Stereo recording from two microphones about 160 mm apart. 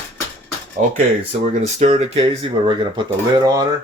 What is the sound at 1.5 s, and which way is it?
Speech, 45° right (ahead or behind).